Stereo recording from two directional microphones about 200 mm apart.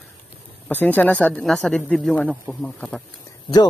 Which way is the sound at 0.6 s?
10° left (ahead or behind).